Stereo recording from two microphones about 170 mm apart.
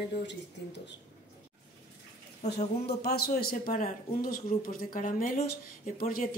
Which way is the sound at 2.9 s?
70° left (ahead or behind).